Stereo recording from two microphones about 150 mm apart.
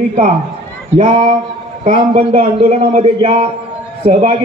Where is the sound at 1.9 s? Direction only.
40° right (ahead or behind).